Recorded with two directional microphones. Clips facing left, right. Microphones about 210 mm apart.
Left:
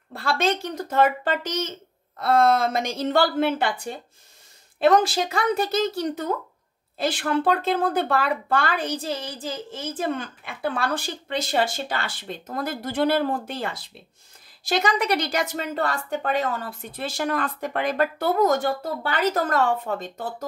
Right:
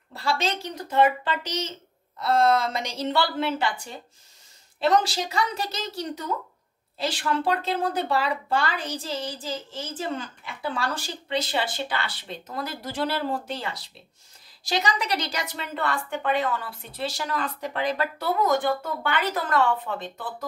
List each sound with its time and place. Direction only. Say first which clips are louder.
0.1 s a woman's voice: left 3 dB; 55° left (ahead or behind)